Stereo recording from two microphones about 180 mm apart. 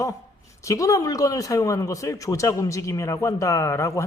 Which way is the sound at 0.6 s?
20° left (ahead or behind).